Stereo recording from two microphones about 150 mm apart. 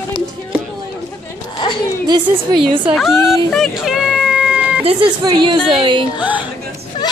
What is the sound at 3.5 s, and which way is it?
Cat, centre (ahead or behind).